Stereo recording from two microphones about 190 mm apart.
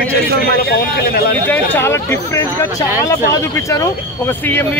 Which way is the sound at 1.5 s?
10° left (ahead or behind).